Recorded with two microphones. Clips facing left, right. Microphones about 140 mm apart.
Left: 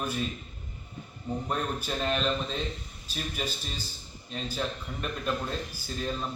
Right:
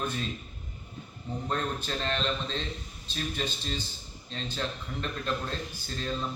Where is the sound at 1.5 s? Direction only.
10° left (ahead or behind).